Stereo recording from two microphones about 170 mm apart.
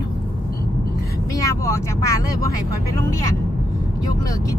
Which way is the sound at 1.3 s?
20° left (ahead or behind).